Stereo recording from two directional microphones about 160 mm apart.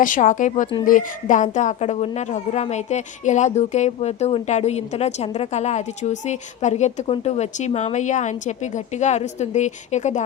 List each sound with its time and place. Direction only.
0.0 s a woman's voice: 55° left (ahead or behind)